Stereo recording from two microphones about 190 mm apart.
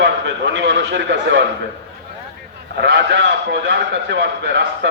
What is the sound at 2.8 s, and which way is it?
A man's voice, 65° right (ahead or behind).